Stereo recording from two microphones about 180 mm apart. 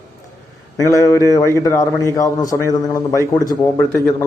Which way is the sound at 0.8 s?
20° left (ahead or behind).